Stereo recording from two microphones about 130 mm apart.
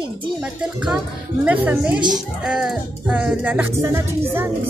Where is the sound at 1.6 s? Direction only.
10° right (ahead or behind).